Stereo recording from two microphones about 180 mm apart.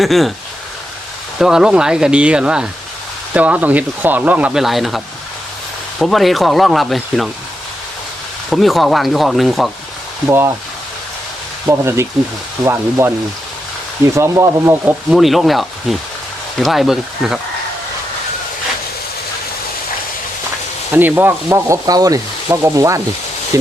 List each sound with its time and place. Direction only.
0.0 s speech: centre (ahead or behind)
1.4 s speech: 5° right (ahead or behind)
3.3 s sizzle: 10° right (ahead or behind)
6.0 s speech: centre (ahead or behind)
8.4 s speech: centre (ahead or behind)
10.2 s sizzle: 15° right (ahead or behind)
11.6 s sizzle: 15° right (ahead or behind)
15.1 s speech: centre (ahead or behind)
20.9 s sizzle: 10° right (ahead or behind)